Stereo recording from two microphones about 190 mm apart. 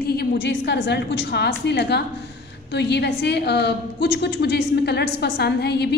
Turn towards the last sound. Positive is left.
turn(degrees=60)  # may be behind; listen again after turning